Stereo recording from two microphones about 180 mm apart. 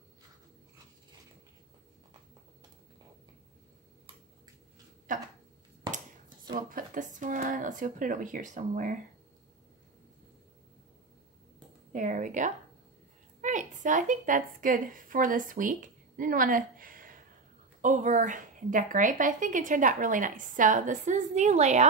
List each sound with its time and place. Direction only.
5.1 s a sound: 50° right (ahead or behind)
6.5 s a woman's voice: 45° right (ahead or behind)
11.9 s a woman's voice: 45° right (ahead or behind)